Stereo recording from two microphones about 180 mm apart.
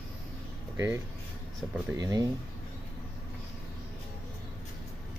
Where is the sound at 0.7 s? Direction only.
15° right (ahead or behind).